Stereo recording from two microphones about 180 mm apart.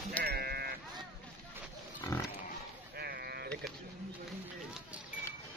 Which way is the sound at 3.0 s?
60° right (ahead or behind).